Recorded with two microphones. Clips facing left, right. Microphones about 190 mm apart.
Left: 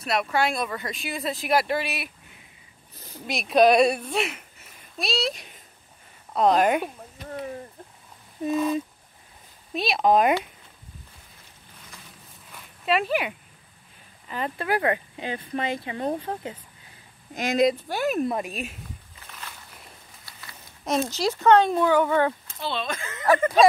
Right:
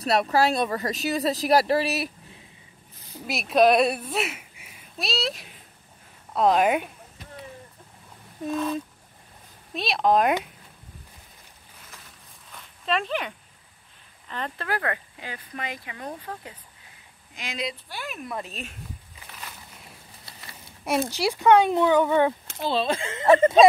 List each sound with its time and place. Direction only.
0.0 s speech: 35° right (ahead or behind)
3.3 s speech: centre (ahead or behind)
8.5 s speech: 5° left (ahead or behind)
12.8 s speech: 10° left (ahead or behind); by 16.5 s 30° left (ahead or behind)
17.3 s speech: 45° left (ahead or behind)
18.4 s speech: 10° left (ahead or behind)
20.8 s speech: 10° right (ahead or behind)
22.6 s speech: 35° right (ahead or behind)